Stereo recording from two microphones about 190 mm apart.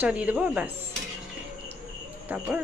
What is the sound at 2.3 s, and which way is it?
Speech, 5° right (ahead or behind).